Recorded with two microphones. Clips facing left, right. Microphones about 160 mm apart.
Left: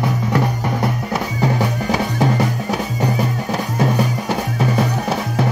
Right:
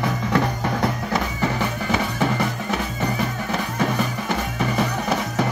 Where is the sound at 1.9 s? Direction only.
35° left (ahead or behind).